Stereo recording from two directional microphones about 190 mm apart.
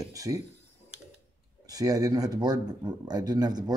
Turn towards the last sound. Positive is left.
turn(degrees=-20)  # may be behind; listen again after turning